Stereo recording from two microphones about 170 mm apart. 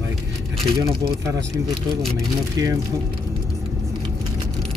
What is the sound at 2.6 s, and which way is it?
Speech, 20° right (ahead or behind).